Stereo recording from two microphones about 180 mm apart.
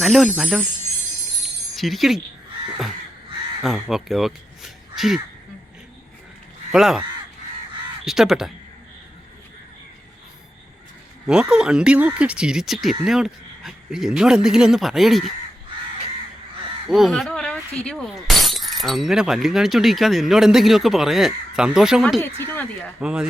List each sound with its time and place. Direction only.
0.0 s speech: centre (ahead or behind)
1.7 s speech: centre (ahead or behind)
3.6 s speech: centre (ahead or behind)
6.7 s speech: 5° right (ahead or behind)
8.0 s speech: centre (ahead or behind)
11.3 s speech: 5° right (ahead or behind)
16.9 s speech: centre (ahead or behind)
22.2 s speech: 10° left (ahead or behind)
23.0 s speech: 5° right (ahead or behind)